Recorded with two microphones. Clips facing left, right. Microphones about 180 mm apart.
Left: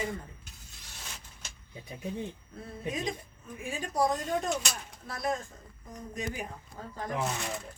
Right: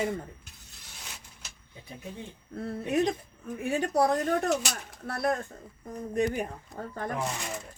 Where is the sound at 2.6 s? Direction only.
70° right (ahead or behind).